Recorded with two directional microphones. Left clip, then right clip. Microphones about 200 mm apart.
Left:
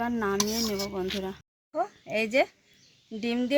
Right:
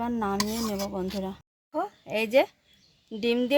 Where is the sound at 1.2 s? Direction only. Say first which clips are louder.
Even; 50° right (ahead or behind).